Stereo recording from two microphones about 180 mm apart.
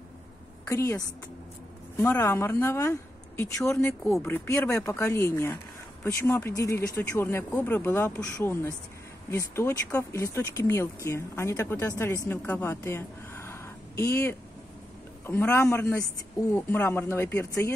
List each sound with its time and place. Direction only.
0.7 s a woman's voice: 15° left (ahead or behind)